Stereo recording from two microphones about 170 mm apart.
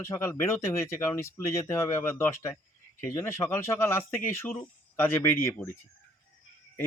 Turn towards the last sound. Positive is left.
turn(degrees=10)  # may be behind; listen again after turning